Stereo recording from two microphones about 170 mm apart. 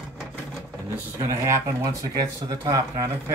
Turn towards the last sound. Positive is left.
turn(degrees=-20)  # may be behind; listen again after turning